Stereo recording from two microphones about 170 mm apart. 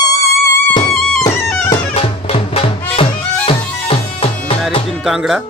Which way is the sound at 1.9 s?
35° left (ahead or behind).